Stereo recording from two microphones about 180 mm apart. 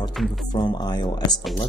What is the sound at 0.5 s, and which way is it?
Speech, 25° left (ahead or behind).